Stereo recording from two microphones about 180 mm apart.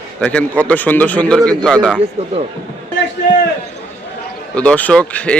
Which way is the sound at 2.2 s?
35° right (ahead or behind).